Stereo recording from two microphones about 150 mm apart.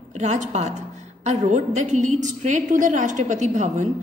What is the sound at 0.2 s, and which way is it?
A woman's voice, 50° right (ahead or behind).